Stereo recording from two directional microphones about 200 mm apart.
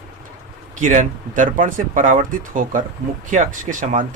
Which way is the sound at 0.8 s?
40° right (ahead or behind).